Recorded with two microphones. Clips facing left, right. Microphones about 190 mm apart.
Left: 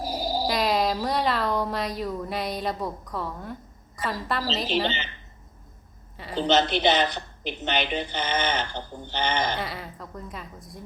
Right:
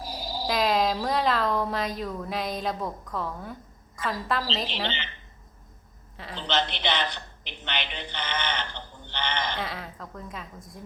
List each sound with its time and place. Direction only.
0.0 s dog: 45° left (ahead or behind)
0.4 s a woman's voice: centre (ahead or behind)
6.3 s a woman's voice: 45° left (ahead or behind)
9.6 s a woman's voice: 5° left (ahead or behind)